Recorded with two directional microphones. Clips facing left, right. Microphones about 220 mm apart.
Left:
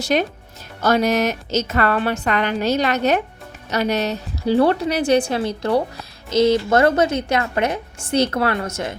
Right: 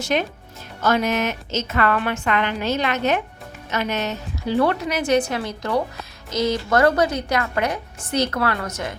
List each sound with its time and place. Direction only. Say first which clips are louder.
0.0 s a woman's voice: left 3 dB; 40° left (ahead or behind)